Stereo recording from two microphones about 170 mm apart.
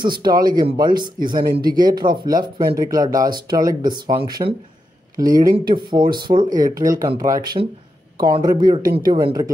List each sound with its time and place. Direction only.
0.0 s speech: 25° right (ahead or behind)